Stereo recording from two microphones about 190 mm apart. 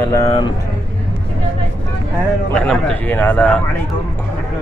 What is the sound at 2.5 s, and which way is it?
A man's voice, 5° left (ahead or behind).